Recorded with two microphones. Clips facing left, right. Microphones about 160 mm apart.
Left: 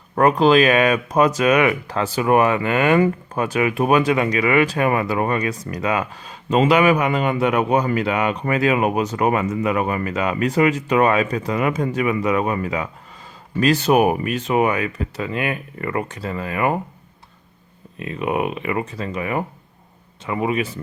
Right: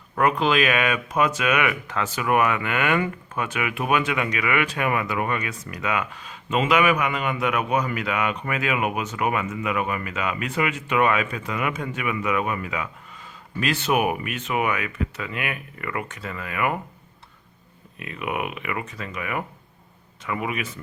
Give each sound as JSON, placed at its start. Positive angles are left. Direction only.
{"t": 0.2, "sound": "speech", "side_deg": 35}
{"t": 18.0, "sound": "speech", "side_deg": 30}